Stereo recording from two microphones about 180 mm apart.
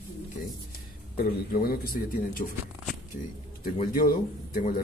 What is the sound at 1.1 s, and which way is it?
Speech, 55° left (ahead or behind).